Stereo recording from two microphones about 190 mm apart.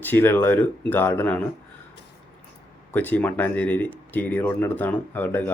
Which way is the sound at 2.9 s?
10° left (ahead or behind).